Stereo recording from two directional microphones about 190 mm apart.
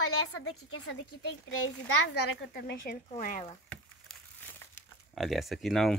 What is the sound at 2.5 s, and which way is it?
Speech, 50° left (ahead or behind).